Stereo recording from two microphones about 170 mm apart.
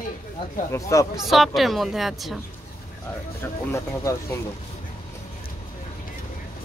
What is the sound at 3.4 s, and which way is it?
Speech, 15° left (ahead or behind).